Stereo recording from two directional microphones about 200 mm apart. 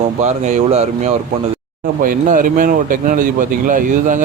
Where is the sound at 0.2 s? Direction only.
35° right (ahead or behind).